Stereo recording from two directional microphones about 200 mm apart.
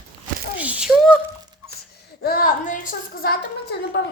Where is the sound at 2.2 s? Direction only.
45° left (ahead or behind).